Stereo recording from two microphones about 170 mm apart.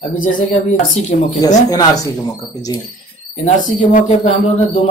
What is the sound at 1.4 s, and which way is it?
Speech, 20° left (ahead or behind).